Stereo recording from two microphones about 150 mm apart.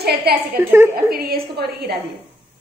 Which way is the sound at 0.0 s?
90° right.